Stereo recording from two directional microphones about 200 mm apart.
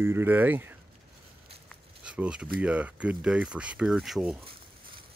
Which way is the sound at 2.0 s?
5° right (ahead or behind).